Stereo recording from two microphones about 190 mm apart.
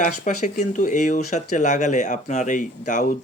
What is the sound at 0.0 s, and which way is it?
Speech, 40° left (ahead or behind).